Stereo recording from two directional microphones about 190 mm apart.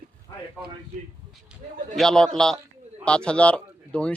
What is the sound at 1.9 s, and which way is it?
Speech, 5° left (ahead or behind).